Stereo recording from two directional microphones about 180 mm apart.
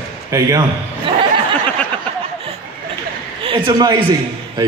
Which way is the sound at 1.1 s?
30° right (ahead or behind).